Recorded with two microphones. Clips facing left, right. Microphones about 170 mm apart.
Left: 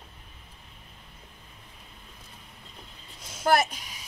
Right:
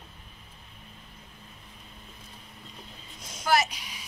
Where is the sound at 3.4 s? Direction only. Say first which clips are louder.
Left 2 dB; 55° left (ahead or behind).